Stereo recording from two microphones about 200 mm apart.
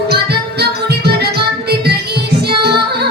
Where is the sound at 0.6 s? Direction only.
55° right (ahead or behind).